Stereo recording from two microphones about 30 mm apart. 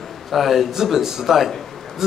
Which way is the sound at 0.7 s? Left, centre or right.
Centre.